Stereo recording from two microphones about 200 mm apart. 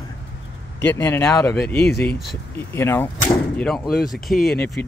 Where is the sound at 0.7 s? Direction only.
10° left (ahead or behind).